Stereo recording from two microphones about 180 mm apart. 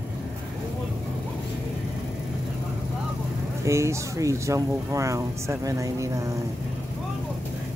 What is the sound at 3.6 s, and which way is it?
Speech, 15° right (ahead or behind).